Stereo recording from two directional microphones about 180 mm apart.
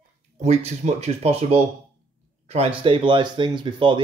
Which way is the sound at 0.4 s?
35° right (ahead or behind).